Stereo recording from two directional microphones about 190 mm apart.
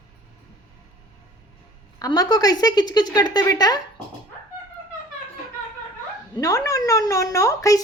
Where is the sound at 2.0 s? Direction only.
20° left (ahead or behind).